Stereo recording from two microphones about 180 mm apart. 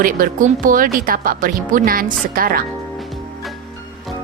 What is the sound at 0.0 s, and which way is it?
Speech, 50° right (ahead or behind).